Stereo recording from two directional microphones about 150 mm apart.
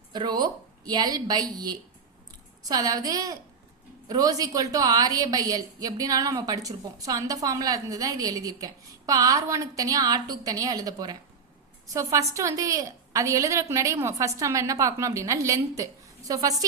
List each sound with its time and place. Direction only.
0.1 s a woman's voice: 30° right (ahead or behind)